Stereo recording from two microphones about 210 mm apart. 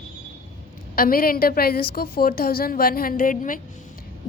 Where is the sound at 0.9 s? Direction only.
45° left (ahead or behind).